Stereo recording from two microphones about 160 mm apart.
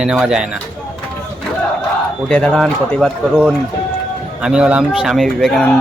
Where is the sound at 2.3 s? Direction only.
5° left (ahead or behind).